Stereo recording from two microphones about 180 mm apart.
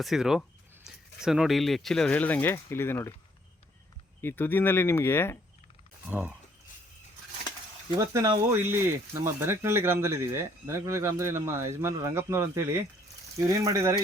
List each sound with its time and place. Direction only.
0.0 s speech: centre (ahead or behind)
4.2 s speech: 10° left (ahead or behind)
6.1 s speech: 10° right (ahead or behind)
7.9 s speech: 20° right (ahead or behind)